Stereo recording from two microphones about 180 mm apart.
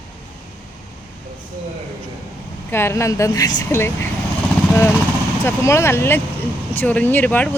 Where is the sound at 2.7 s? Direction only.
15° left (ahead or behind).